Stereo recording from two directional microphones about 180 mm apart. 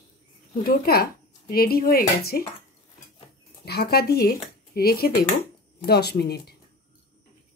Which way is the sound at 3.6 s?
60° left (ahead or behind).